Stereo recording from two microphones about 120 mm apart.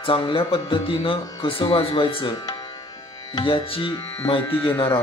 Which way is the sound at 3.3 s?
45° left (ahead or behind).